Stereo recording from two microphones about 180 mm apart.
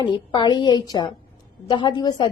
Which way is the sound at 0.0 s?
25° left (ahead or behind).